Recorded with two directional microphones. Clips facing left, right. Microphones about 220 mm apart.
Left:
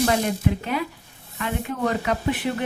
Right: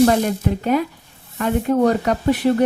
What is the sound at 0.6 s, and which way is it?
Speech, 45° right (ahead or behind).